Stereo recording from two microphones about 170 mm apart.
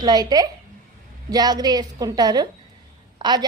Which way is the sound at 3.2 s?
25° right (ahead or behind).